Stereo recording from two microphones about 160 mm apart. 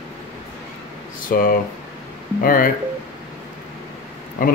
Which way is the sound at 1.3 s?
65° left (ahead or behind).